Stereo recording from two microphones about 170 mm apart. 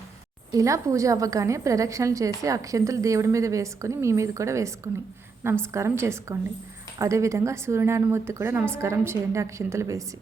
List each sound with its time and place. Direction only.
0.5 s a woman's voice: 20° right (ahead or behind)
5.7 s a woman's voice: 15° right (ahead or behind)